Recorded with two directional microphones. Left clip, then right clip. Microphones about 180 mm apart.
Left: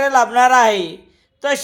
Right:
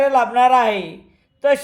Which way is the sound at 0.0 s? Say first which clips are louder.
Left 1 dB; 20° left (ahead or behind).